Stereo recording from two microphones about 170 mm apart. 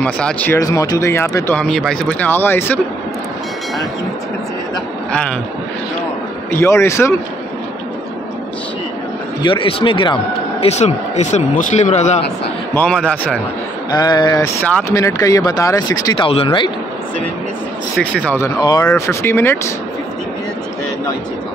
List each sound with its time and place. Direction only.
0.0 s speech: 5° left (ahead or behind)
0.6 s speech: 20° left (ahead or behind)
6.5 s speech: 15° left (ahead or behind)
9.4 s a man's voice: 30° left (ahead or behind)
12.7 s speech: 5° left (ahead or behind)
13.9 s speech: 25° left (ahead or behind)
14.7 s speech: 10° left (ahead or behind)
15.0 s speech: 20° left (ahead or behind)
16.3 s a man's voice: 35° left (ahead or behind)
17.9 s speech: 5° left (ahead or behind)
18.6 s speech: 25° left (ahead or behind)